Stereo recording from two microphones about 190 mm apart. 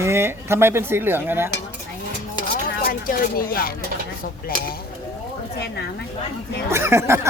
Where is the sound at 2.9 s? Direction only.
50° left (ahead or behind).